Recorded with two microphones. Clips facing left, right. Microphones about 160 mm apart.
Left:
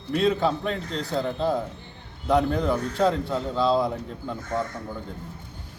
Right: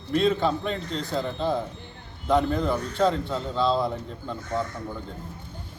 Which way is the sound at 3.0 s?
5° left (ahead or behind).